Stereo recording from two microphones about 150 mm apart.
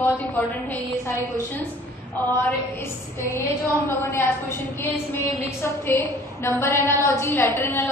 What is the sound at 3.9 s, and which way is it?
Speech, 15° left (ahead or behind).